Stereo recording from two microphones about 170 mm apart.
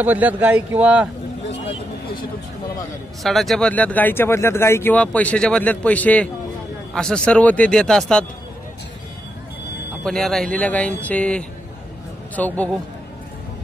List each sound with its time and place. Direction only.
0.0 s speech: 10° right (ahead or behind)
1.5 s a sound: 90° left
3.3 s a man's voice: centre (ahead or behind)
10.0 s speech: centre (ahead or behind)